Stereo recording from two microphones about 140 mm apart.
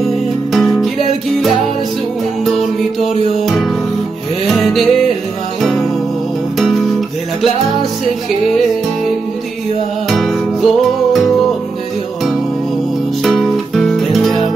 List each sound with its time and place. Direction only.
0.0 s music: centre (ahead or behind)
3.4 s music: centre (ahead or behind)
10.0 s music: centre (ahead or behind)
13.2 s music: centre (ahead or behind)